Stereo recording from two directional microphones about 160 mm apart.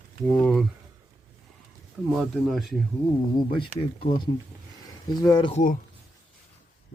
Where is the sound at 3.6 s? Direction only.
30° left (ahead or behind).